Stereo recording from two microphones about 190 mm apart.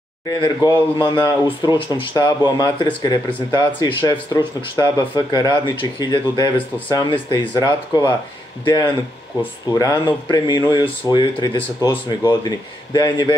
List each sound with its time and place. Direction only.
0.4 s speech: 20° left (ahead or behind)